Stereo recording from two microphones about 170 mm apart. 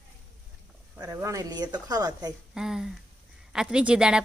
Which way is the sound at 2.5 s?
5° right (ahead or behind).